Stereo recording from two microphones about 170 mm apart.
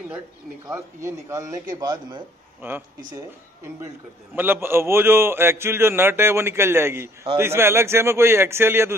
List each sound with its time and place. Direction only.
0.7 s a man's voice: 20° right (ahead or behind)
2.6 s a man's voice: 15° right (ahead or behind)
4.4 s a man's voice: 15° right (ahead or behind)